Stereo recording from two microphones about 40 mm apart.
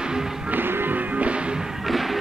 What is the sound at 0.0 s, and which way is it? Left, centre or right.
Music, centre.